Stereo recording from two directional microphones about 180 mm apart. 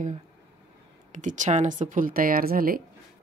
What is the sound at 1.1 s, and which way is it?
Speech, 45° right (ahead or behind).